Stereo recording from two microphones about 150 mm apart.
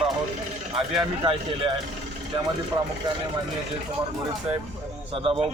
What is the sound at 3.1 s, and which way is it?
Speech, 30° right (ahead or behind).